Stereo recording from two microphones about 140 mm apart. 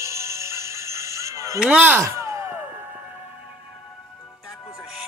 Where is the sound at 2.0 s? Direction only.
20° right (ahead or behind).